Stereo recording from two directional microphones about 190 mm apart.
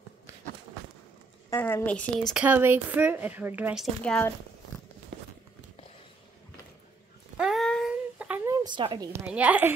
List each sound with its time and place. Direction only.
1.5 s a woman's voice: 10° left (ahead or behind); by 3.8 s 10° right (ahead or behind)
4.0 s speech: 5° left (ahead or behind)
7.3 s dog: centre (ahead or behind)
8.2 s a sound: 10° right (ahead or behind)
8.6 s a woman's voice: 25° right (ahead or behind)
9.2 s a woman's voice: 5° right (ahead or behind)